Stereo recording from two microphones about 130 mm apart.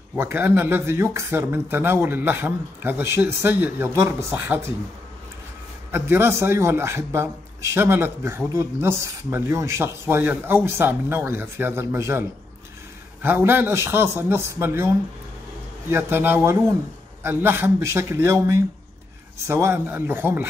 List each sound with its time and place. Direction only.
0.1 s speech: 15° right (ahead or behind)
5.9 s a man's voice: 15° right (ahead or behind)
15.9 s a man's voice: 15° right (ahead or behind)